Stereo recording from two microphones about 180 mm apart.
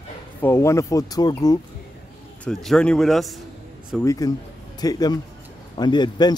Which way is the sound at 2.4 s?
Centre (ahead or behind).